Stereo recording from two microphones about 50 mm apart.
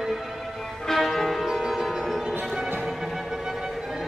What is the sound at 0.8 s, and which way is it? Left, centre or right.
Music, centre.